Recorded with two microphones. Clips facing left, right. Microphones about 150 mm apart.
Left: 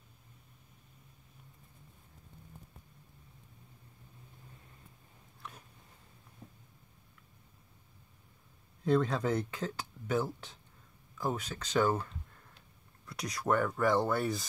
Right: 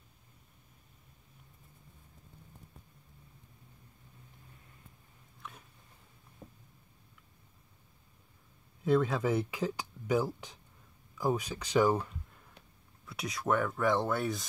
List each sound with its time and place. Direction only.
8.8 s speech: 5° right (ahead or behind)
13.0 s speech: centre (ahead or behind)